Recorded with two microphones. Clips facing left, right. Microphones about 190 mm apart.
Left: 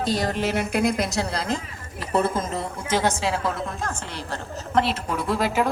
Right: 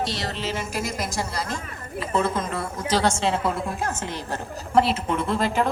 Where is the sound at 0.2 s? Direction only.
50° left (ahead or behind).